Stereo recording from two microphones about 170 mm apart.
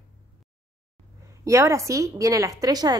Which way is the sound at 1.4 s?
20° right (ahead or behind).